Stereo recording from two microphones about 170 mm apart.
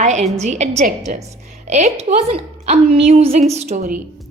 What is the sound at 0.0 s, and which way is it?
A woman's voice, 45° right (ahead or behind).